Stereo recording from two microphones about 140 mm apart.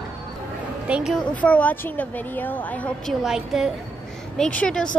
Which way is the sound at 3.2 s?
5° right (ahead or behind).